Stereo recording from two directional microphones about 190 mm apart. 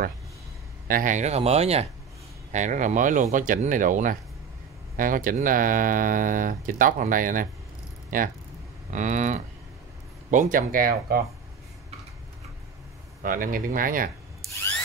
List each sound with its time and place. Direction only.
0.8 s speech: 45° right (ahead or behind)
13.2 s speech: 45° right (ahead or behind)